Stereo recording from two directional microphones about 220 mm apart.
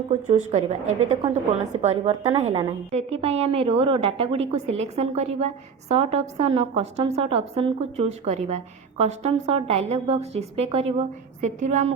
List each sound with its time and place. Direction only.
0.1 s a woman's voice: 30° right (ahead or behind)